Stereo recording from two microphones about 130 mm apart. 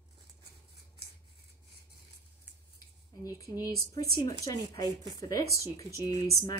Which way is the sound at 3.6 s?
30° left (ahead or behind).